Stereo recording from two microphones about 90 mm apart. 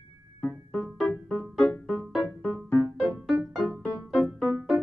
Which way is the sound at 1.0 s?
5° left (ahead or behind).